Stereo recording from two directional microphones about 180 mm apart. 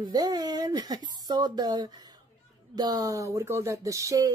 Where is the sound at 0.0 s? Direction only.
20° right (ahead or behind).